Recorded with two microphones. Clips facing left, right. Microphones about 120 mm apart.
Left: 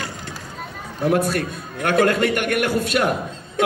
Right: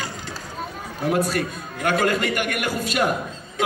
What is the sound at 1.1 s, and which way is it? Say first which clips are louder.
A man's voice: left 2 dB; 50° left (ahead or behind).